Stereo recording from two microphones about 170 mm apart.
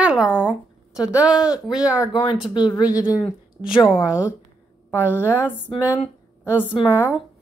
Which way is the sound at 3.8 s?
5° right (ahead or behind).